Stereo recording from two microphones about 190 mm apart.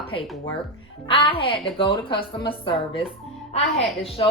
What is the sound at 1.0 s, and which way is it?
A woman's voice, 30° left (ahead or behind).